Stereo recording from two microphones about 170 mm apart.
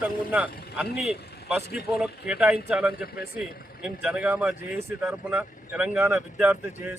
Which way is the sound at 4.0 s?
10° right (ahead or behind).